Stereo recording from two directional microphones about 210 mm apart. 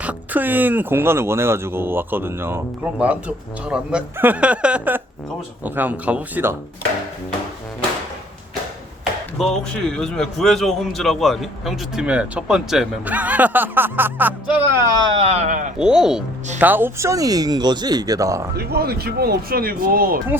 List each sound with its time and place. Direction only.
0.0 s speech: 5° right (ahead or behind)
9.4 s a man's voice: 5° left (ahead or behind)
15.0 s speech: 25° right (ahead or behind)
15.8 s a man's voice: 5° right (ahead or behind)
18.5 s speech: 50° right (ahead or behind)